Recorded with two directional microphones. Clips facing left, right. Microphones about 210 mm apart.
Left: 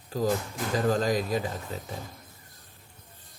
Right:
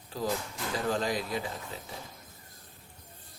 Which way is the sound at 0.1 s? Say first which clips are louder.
Left 5 dB; 45° left (ahead or behind).